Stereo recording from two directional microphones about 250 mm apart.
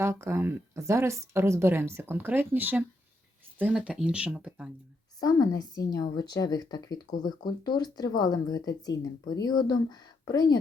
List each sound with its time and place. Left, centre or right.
0.0 s speech: centre
5.2 s speech: centre